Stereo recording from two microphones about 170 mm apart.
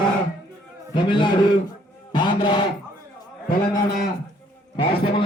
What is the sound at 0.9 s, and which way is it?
A man's voice, 25° left (ahead or behind).